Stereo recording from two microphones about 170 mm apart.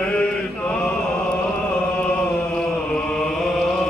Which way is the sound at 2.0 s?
5° left (ahead or behind).